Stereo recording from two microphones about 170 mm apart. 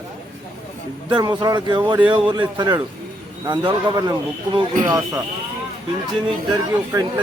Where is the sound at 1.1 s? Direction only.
25° right (ahead or behind).